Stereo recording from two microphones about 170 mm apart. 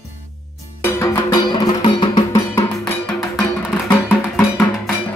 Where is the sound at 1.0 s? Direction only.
15° left (ahead or behind).